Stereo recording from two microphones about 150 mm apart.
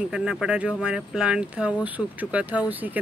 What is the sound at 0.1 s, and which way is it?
Speech, 5° right (ahead or behind).